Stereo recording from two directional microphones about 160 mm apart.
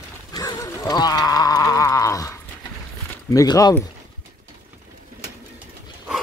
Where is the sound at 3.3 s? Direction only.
20° left (ahead or behind).